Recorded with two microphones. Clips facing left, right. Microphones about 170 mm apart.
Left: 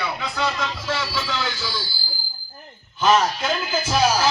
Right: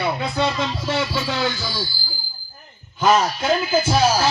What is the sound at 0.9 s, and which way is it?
Speech, 50° right (ahead or behind).